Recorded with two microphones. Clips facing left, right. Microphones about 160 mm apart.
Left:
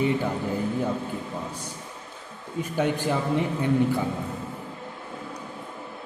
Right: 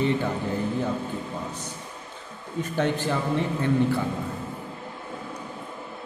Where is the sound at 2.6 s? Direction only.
10° left (ahead or behind).